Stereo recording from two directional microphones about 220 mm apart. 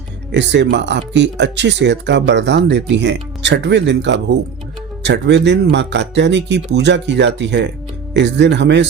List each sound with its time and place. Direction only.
0.3 s speech: 55° right (ahead or behind)